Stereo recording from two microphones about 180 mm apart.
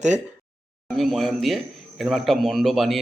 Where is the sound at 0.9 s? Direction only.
Centre (ahead or behind).